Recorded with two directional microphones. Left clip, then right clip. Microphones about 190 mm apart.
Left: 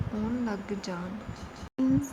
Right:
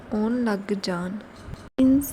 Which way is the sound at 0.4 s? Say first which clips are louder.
Right 8 dB; 40° right (ahead or behind).